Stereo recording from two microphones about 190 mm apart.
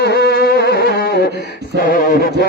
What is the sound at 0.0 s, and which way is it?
Music, 60° left (ahead or behind).